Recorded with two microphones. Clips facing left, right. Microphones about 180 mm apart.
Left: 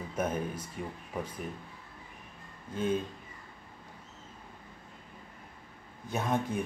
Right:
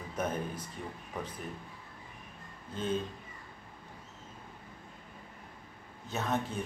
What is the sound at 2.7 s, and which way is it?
Speech, 10° left (ahead or behind).